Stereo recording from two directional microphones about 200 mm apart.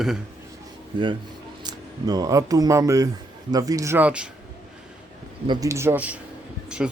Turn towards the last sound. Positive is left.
turn(degrees=-5)  # may be behind; listen again after turning